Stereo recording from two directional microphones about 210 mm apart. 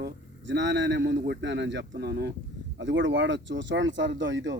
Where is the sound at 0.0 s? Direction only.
55° right (ahead or behind).